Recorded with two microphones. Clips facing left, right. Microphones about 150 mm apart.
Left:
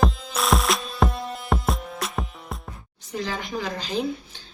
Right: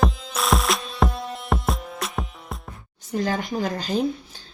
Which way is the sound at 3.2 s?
50° right (ahead or behind).